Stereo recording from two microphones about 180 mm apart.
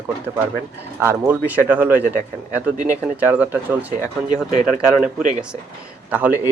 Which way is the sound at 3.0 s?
10° right (ahead or behind).